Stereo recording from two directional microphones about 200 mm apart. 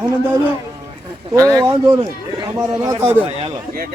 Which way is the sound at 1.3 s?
15° right (ahead or behind).